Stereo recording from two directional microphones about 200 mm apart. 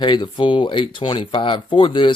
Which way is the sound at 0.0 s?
25° left (ahead or behind).